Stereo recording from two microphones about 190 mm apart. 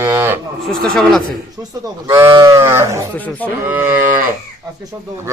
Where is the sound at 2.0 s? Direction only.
20° right (ahead or behind).